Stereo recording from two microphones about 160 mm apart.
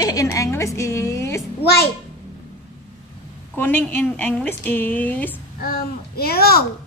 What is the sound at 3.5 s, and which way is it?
A woman's voice, 10° left (ahead or behind).